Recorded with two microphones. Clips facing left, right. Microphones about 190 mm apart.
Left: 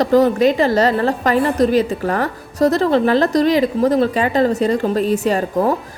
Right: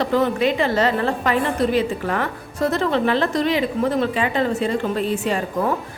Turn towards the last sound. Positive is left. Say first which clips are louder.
# left 5 dB
turn(degrees=40)  # may be behind; listen again after turning